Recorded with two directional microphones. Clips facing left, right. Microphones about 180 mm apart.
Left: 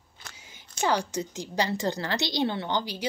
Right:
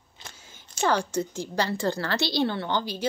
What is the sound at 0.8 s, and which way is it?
A woman's voice, 15° left (ahead or behind).